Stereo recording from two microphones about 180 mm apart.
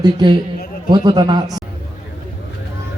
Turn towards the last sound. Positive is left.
turn(degrees=-20)  # may be behind; listen again after turning